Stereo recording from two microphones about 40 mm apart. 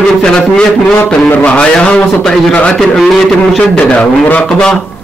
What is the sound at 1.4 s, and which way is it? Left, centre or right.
Speech, left.